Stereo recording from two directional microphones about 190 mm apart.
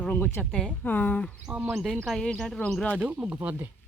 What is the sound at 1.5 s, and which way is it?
Speech, 5° right (ahead or behind).